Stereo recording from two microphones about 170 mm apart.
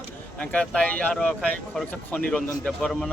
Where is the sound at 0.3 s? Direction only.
5° left (ahead or behind).